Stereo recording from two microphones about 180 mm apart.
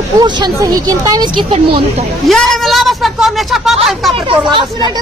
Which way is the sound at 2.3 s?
Centre (ahead or behind).